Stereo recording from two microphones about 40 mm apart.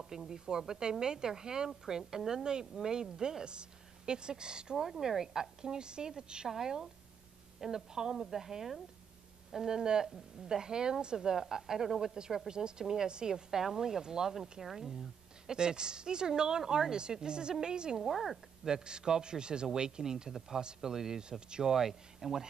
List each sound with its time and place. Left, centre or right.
0.0 s a woman's voice: centre
4.7 s a woman's voice: centre
7.9 s a woman's voice: centre
18.0 s a woman's voice: centre
18.7 s a woman's voice: centre
21.7 s a woman's voice: centre